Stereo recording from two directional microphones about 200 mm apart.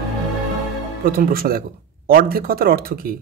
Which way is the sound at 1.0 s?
50° right (ahead or behind).